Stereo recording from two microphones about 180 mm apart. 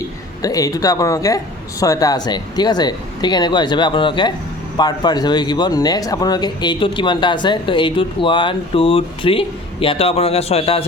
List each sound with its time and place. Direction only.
0.4 s speech: 20° left (ahead or behind)